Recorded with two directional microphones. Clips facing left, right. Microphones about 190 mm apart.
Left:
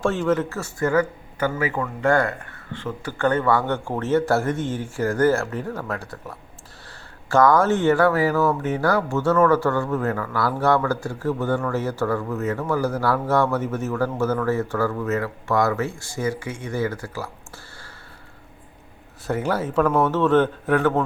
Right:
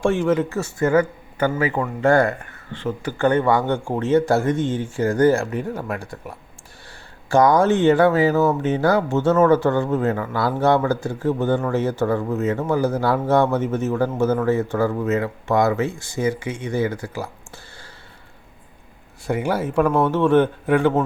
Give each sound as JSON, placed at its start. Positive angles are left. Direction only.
{"t": 0.0, "sound": "speech", "side_deg": -10}
{"t": 19.3, "sound": "speech", "side_deg": -10}